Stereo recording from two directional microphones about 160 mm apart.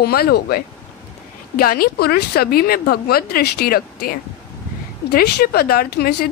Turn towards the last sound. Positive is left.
turn(degrees=70)  # may be behind; listen again after turning